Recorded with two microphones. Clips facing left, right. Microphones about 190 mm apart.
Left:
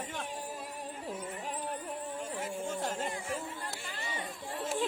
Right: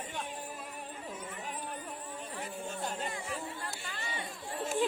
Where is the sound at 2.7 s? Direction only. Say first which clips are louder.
Left 1 dB; 90° left.